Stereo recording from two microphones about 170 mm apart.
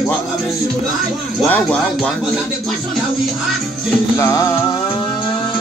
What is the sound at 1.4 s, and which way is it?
Speech, 10° left (ahead or behind).